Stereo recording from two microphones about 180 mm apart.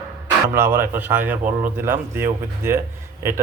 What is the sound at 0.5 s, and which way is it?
A man's voice, 15° right (ahead or behind).